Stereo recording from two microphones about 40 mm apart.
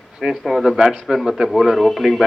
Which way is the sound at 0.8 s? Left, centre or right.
Centre.